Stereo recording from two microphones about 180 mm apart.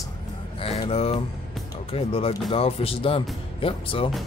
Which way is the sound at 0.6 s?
35° left (ahead or behind).